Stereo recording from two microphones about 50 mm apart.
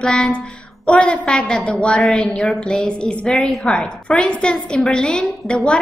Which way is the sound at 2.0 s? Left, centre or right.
Centre.